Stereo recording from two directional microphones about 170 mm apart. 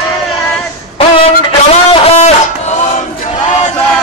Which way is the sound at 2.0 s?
40° left (ahead or behind).